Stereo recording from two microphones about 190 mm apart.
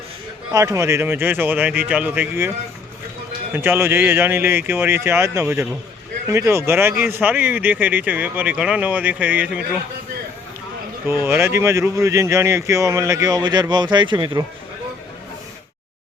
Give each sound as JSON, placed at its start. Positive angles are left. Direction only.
{"t": 0.5, "sound": "speech", "side_deg": -15}
{"t": 3.5, "sound": "speech", "side_deg": -10}
{"t": 11.0, "sound": "speech", "side_deg": -15}